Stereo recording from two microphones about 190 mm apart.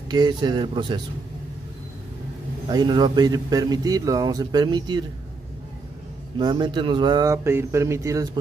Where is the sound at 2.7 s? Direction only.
20° right (ahead or behind).